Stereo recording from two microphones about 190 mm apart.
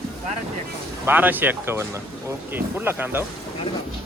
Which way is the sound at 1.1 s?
10° right (ahead or behind).